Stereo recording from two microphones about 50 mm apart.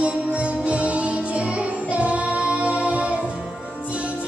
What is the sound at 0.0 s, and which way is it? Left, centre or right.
Music, right.